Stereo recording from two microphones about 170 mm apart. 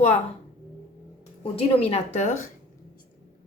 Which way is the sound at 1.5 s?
35° left (ahead or behind).